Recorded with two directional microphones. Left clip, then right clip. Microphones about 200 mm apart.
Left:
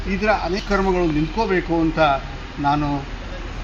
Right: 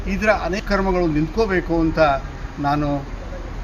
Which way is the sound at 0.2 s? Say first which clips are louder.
Right 1 dB; 15° right (ahead or behind).